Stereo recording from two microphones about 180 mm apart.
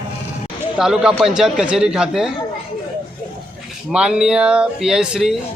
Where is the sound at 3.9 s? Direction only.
5° right (ahead or behind).